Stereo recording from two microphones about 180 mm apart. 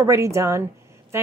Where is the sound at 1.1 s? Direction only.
15° right (ahead or behind).